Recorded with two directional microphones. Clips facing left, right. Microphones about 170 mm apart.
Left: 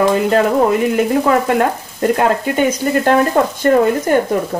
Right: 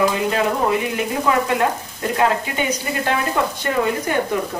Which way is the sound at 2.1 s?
50° left (ahead or behind).